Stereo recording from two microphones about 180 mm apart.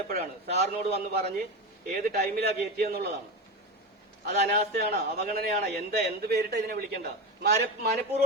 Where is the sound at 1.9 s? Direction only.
55° right (ahead or behind).